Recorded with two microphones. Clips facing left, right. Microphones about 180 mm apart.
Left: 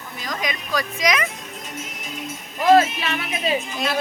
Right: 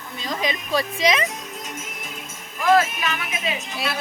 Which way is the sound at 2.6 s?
30° left (ahead or behind).